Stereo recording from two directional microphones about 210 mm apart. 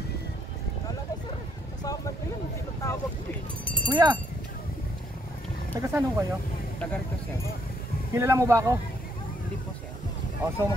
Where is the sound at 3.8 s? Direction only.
20° right (ahead or behind).